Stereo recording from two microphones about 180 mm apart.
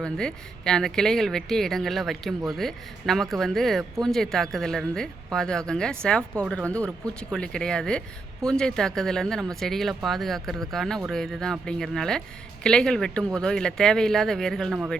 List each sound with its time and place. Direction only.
0.0 s speech: 5° left (ahead or behind)